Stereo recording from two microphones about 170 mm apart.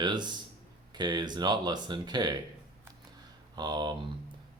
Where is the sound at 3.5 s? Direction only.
25° right (ahead or behind).